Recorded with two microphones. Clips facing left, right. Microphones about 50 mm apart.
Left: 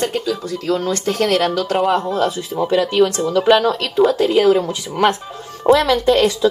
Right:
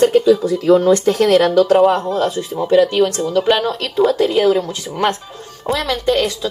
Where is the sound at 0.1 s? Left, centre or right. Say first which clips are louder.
Right 9 dB; centre.